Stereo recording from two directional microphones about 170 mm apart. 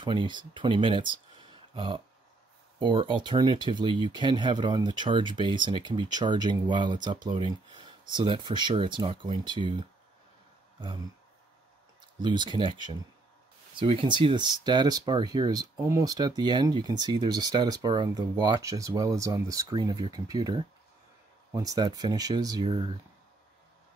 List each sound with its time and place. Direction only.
0.0 s speech: 30° right (ahead or behind)
12.2 s speech: 25° right (ahead or behind)